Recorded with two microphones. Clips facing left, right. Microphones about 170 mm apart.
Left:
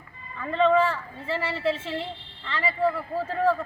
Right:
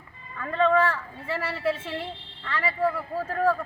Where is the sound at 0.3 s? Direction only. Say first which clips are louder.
Left 1 dB; centre (ahead or behind).